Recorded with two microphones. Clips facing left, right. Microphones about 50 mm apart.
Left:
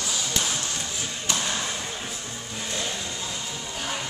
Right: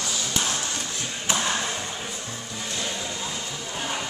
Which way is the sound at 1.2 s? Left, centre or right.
Right.